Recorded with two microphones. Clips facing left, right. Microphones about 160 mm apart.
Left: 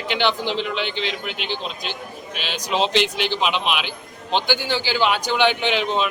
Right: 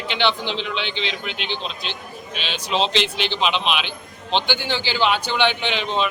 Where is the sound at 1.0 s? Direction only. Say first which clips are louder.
Left 1 dB; 55° left (ahead or behind).